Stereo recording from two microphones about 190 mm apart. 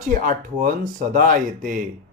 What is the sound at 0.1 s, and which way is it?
Speech, 45° right (ahead or behind).